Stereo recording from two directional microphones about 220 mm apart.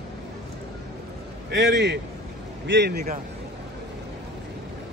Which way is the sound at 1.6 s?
50° right (ahead or behind).